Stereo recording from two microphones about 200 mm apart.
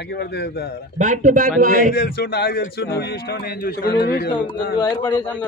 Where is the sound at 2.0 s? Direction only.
50° left (ahead or behind).